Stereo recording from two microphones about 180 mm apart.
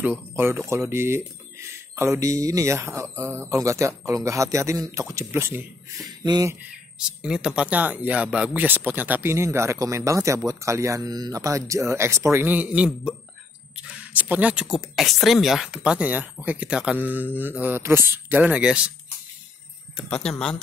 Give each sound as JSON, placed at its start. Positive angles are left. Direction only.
{"t": 0.0, "sound": "speech", "side_deg": -10}
{"t": 6.2, "sound": "speech", "side_deg": -25}
{"t": 6.6, "sound": "speech", "side_deg": -5}
{"t": 20.1, "sound": "speech", "side_deg": 5}